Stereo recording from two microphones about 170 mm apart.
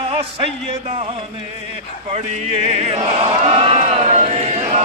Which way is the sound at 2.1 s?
40° right (ahead or behind).